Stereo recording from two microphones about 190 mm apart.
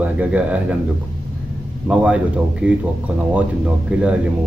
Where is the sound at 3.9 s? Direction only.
5° right (ahead or behind).